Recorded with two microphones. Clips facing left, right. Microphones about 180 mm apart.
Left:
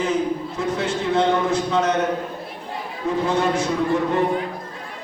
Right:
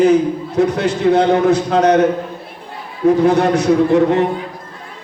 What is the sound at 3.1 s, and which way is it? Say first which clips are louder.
A man's voice: right 9 dB; 70° right (ahead or behind).